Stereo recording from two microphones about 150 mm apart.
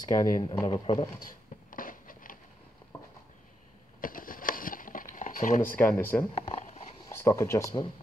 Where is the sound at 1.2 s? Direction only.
65° left (ahead or behind).